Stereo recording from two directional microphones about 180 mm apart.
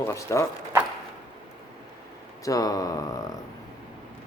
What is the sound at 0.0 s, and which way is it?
Speech, 15° left (ahead or behind).